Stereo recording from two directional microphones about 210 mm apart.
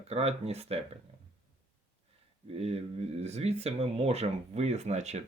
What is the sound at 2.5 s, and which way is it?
Speech, 30° right (ahead or behind).